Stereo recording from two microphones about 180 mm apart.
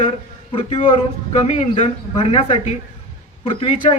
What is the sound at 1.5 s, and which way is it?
A man's voice, 35° left (ahead or behind).